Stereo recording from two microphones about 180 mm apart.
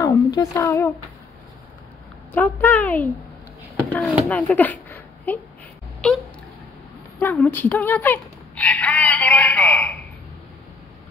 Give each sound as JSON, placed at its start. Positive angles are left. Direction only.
{"t": 0.0, "sound": "speech", "side_deg": 20}
{"t": 2.3, "sound": "speech", "side_deg": 10}
{"t": 3.7, "sound": "a sound", "side_deg": 5}
{"t": 4.3, "sound": "speech", "side_deg": 5}